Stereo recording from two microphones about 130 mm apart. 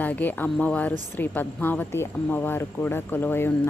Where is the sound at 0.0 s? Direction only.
15° left (ahead or behind).